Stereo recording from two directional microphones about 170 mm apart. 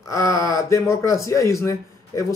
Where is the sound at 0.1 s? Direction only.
20° left (ahead or behind).